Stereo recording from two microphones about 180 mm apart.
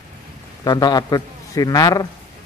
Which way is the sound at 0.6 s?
25° left (ahead or behind).